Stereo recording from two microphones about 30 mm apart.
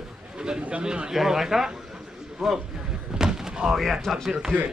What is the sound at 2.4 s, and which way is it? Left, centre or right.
Speech, centre.